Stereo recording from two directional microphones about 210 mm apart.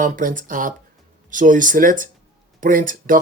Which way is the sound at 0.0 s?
40° right (ahead or behind).